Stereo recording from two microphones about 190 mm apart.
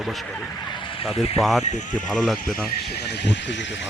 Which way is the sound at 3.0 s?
65° left (ahead or behind).